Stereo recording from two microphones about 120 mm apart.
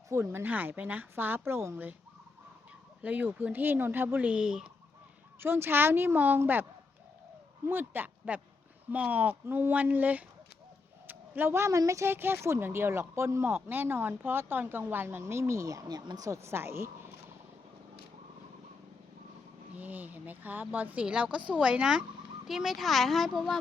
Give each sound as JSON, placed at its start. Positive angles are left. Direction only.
{"t": 0.1, "sound": "a woman's voice", "side_deg": -20}
{"t": 3.0, "sound": "a woman's voice", "side_deg": -15}
{"t": 5.4, "sound": "a woman's voice", "side_deg": -20}
{"t": 7.7, "sound": "a woman's voice", "side_deg": -15}
{"t": 19.7, "sound": "a woman's voice", "side_deg": -15}